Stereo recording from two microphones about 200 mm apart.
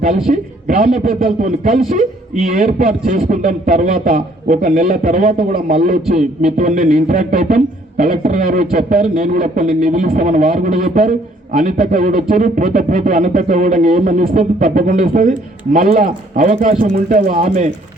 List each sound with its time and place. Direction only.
0.3 s speech: 40° right (ahead or behind)